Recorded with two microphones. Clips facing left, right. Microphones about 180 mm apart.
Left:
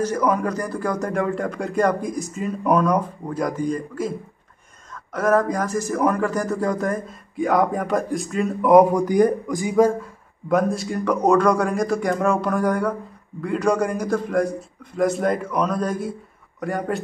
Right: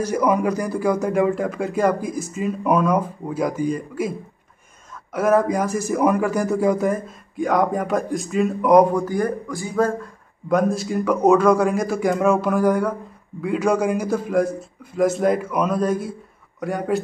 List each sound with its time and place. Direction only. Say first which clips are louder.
0.0 s a man's voice: right 2 dB; 10° right (ahead or behind)
5.1 s speech: right 2 dB; 10° right (ahead or behind)
9.0 s speech: left 5 dB; 20° left (ahead or behind)
10.5 s a man's voice: right 1 dB; centre (ahead or behind)